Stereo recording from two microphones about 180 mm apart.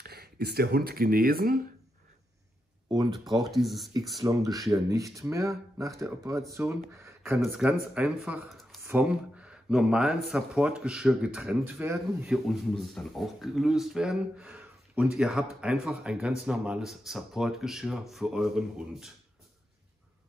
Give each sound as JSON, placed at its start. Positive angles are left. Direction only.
{"t": 0.0, "sound": "speech", "side_deg": -60}
{"t": 3.3, "sound": "speech", "side_deg": 0}
{"t": 4.2, "sound": "speech", "side_deg": -20}
{"t": 12.4, "sound": "speech", "side_deg": 0}